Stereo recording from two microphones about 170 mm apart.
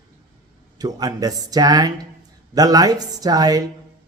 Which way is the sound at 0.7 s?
20° right (ahead or behind).